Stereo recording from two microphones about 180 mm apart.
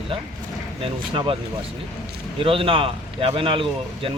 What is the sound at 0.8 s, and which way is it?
Speech, 30° right (ahead or behind).